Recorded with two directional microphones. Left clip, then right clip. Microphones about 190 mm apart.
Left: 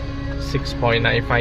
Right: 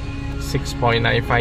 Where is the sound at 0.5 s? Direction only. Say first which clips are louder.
Even; 10° right (ahead or behind).